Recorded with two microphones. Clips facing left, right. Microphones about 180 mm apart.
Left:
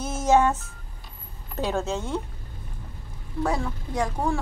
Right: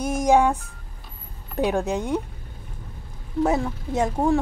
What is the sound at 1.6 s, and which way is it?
Speech, 15° right (ahead or behind).